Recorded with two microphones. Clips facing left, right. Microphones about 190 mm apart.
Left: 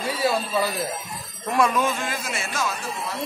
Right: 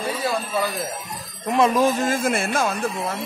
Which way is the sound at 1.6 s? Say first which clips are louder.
Right 4 dB; 35° right (ahead or behind).